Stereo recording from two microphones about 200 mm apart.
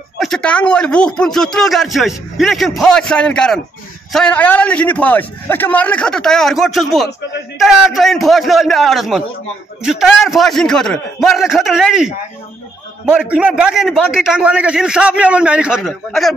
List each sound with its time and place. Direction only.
0.2 s speech: 5° left (ahead or behind)